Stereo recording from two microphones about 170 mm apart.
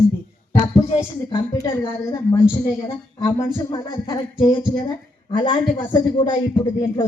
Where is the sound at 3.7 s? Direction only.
25° left (ahead or behind).